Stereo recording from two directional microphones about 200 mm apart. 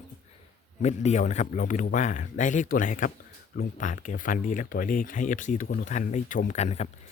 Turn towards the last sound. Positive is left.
turn(degrees=35)  # may be behind; listen again after turning